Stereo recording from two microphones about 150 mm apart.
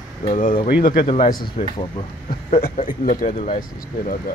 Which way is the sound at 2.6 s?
55° left (ahead or behind).